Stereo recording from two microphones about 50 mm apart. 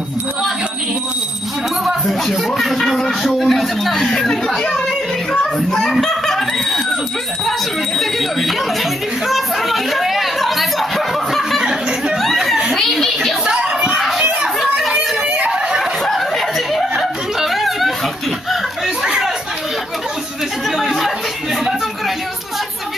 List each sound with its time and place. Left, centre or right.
2.0 s speech: centre
8.0 s speech: centre
9.3 s chatter: centre
12.2 s a sound: centre
12.7 s a child's voice: centre
13.5 s a sound: centre
13.9 s children playing: centre
15.2 s a sound: right
15.8 s snicker: centre
19.0 s chatter: centre
20.7 s chatter: centre